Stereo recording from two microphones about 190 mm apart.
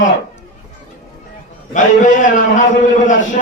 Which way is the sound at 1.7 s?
40° left (ahead or behind).